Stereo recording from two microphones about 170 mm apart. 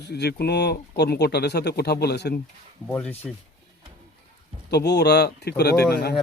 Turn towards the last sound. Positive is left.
turn(degrees=70)  # may be behind; listen again after turning